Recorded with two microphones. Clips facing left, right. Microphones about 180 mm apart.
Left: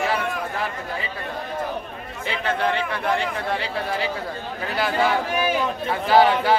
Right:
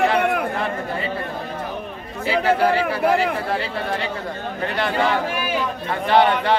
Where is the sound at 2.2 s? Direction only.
5° right (ahead or behind).